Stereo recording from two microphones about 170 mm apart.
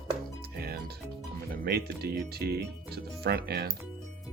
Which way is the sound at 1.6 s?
70° right (ahead or behind).